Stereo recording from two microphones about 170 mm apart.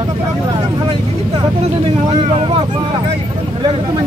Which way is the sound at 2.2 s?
35° right (ahead or behind).